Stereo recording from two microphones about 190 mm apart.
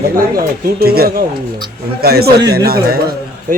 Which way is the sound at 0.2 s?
50° right (ahead or behind).